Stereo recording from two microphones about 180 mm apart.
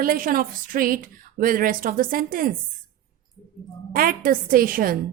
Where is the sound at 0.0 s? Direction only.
50° right (ahead or behind).